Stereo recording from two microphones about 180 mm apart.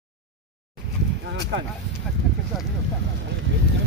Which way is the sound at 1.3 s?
75° right (ahead or behind).